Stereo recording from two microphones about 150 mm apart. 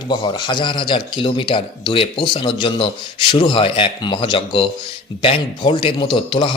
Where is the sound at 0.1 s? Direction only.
30° left (ahead or behind).